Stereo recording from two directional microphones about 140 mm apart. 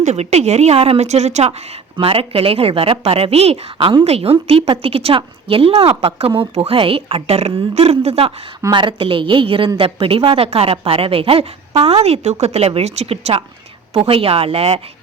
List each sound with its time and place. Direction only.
0.0 s a woman's voice: 50° right (ahead or behind)
8.7 s a woman's voice: 35° right (ahead or behind)